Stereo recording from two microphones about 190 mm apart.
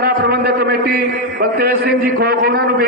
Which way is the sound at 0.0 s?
55° right (ahead or behind).